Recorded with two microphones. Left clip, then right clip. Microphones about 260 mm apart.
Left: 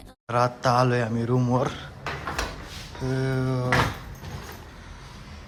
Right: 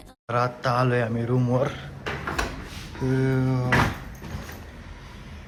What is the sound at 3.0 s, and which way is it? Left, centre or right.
Speech, centre.